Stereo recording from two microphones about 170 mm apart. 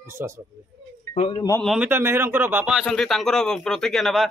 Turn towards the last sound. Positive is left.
turn(degrees=0)  # may be behind; listen again after turning